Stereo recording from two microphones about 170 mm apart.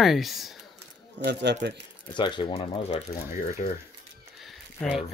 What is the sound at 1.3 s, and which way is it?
Speech, 90° right.